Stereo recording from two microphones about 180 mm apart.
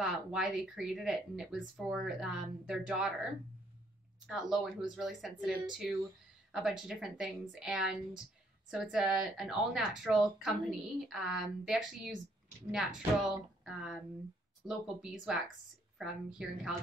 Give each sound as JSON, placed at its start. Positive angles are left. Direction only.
{"t": 0.0, "sound": "speech", "side_deg": -5}
{"t": 4.3, "sound": "speech", "side_deg": -5}